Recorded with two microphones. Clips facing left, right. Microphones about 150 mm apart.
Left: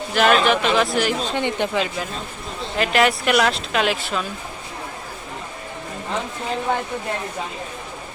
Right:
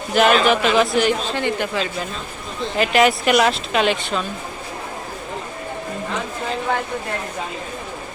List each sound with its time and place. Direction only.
0.1 s speech: centre (ahead or behind)
1.3 s speech: 20° left (ahead or behind)
2.7 s speech: centre (ahead or behind)